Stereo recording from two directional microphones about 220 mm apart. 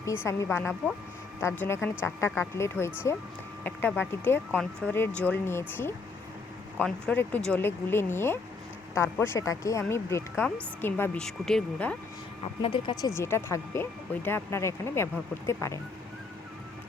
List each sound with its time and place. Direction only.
0.3 s speech: 10° left (ahead or behind)
12.6 s speech: 20° left (ahead or behind)